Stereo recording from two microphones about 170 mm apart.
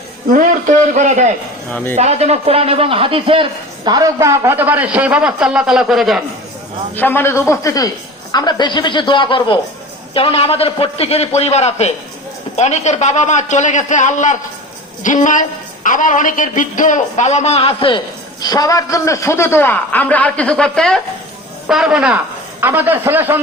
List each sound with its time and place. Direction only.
0.3 s a man's voice: 50° right (ahead or behind)
1.7 s a man's voice: 10° left (ahead or behind)
2.0 s a man's voice: 40° right (ahead or behind); by 6.2 s centre (ahead or behind)
6.9 s a man's voice: 10° left (ahead or behind); by 23.4 s 10° right (ahead or behind)